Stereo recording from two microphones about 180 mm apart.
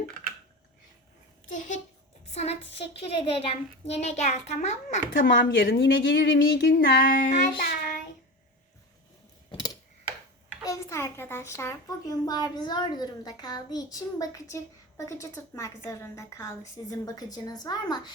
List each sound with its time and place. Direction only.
1.5 s child singing: 45° left (ahead or behind)
2.3 s speech: 35° left (ahead or behind)
5.2 s a woman's voice: 55° left (ahead or behind)
5.8 s a sound: 90° left
6.7 s child singing: 55° left (ahead or behind)
9.5 s a sound: 25° left (ahead or behind)
10.7 s a child's voice: 15° left (ahead or behind)